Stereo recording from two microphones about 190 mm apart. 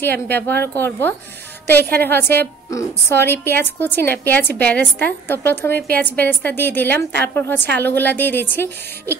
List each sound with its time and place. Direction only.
0.3 s a woman's voice: 10° left (ahead or behind)
5.7 s a woman's voice: 55° right (ahead or behind)
5.9 s a woman's voice: 10° left (ahead or behind)